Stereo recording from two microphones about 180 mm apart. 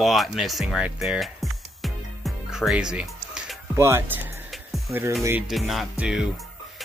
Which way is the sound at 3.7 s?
15° right (ahead or behind).